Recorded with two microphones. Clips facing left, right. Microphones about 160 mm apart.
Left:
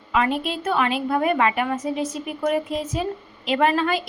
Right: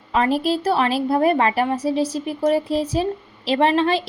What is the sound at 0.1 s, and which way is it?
A woman's voice, 35° right (ahead or behind).